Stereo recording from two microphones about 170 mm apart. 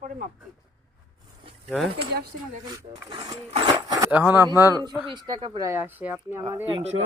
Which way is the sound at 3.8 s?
20° right (ahead or behind).